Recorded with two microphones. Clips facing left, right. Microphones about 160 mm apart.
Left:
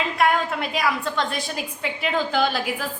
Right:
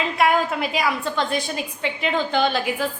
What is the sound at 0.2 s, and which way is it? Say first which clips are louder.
A woman's voice: right 2 dB; centre (ahead or behind).